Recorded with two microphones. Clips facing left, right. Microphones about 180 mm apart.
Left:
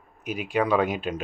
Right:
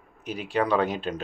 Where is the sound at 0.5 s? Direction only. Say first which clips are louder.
Left 1 dB; 15° left (ahead or behind).